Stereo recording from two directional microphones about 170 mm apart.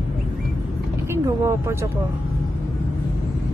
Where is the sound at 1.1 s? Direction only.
15° right (ahead or behind).